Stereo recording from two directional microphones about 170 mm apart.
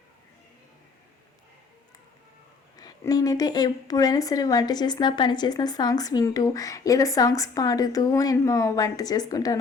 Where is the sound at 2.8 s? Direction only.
20° left (ahead or behind).